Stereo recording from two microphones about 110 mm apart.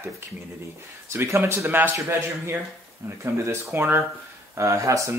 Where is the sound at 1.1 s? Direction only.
25° right (ahead or behind).